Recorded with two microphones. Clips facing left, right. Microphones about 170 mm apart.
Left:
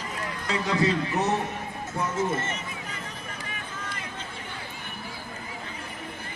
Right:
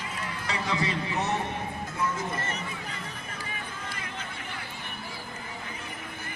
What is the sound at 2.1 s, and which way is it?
Run, 25° left (ahead or behind).